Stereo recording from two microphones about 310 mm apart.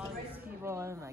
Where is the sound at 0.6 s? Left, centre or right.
Centre.